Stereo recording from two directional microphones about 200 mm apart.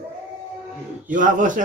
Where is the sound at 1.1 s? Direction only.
40° right (ahead or behind).